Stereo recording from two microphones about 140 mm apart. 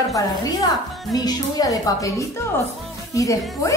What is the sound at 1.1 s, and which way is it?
Speech, 25° left (ahead or behind).